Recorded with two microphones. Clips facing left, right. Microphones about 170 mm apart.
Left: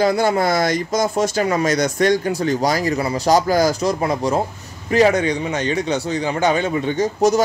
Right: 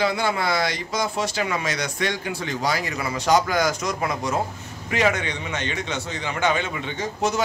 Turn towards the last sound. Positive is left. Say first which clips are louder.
# left 8 dB
turn(degrees=40)  # may be behind; listen again after turning